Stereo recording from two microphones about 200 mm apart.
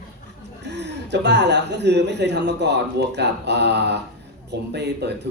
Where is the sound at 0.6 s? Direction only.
60° right (ahead or behind).